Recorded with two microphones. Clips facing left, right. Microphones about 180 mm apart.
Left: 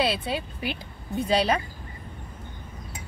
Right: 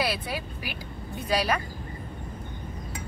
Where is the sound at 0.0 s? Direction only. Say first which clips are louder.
Left 3 dB; 25° left (ahead or behind).